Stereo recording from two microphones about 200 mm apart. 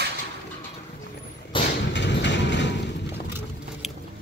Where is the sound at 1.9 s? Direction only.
60° left (ahead or behind).